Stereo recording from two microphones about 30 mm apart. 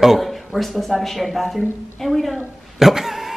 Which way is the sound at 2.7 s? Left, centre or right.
Centre.